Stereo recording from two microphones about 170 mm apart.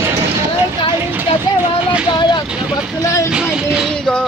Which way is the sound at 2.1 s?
25° left (ahead or behind).